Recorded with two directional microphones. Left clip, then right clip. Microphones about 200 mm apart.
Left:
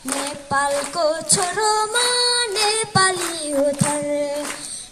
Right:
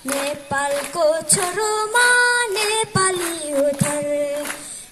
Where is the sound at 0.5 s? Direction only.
30° right (ahead or behind).